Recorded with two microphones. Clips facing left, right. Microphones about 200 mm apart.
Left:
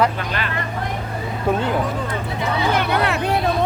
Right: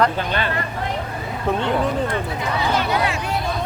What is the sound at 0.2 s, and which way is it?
Speech, 30° right (ahead or behind).